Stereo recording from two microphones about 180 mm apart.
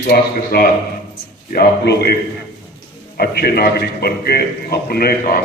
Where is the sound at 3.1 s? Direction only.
60° left (ahead or behind).